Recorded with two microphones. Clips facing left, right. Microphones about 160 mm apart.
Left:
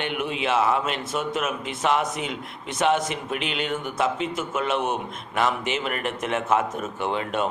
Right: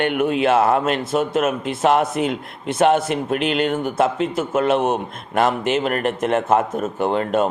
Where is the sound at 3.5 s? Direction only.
45° right (ahead or behind).